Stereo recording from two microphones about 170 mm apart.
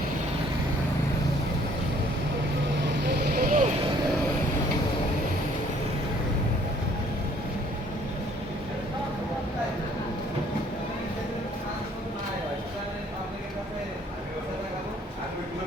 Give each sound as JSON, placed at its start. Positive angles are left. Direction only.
{"t": 3.1, "sound": "vehicle", "side_deg": -60}